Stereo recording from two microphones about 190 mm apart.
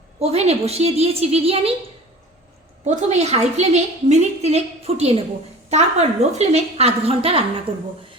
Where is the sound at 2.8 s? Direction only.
35° right (ahead or behind).